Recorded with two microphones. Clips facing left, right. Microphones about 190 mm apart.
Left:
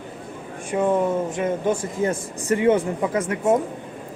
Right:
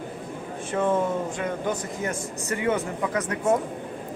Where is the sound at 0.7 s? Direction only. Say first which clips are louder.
Left 3 dB; 15° left (ahead or behind).